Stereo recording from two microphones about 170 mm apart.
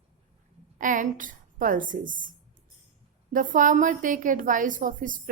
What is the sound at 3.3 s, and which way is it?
A woman's voice, 50° right (ahead or behind).